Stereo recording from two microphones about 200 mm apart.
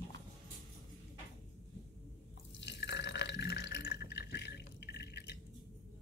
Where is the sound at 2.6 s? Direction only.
60° left (ahead or behind).